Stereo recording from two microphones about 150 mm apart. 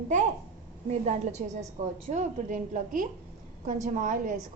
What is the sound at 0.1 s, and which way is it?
A woman's voice, 55° right (ahead or behind).